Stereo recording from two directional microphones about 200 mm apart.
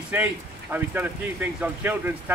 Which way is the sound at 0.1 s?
10° right (ahead or behind).